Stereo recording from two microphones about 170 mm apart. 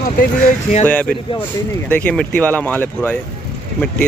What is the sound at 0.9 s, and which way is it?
Speech, 10° left (ahead or behind).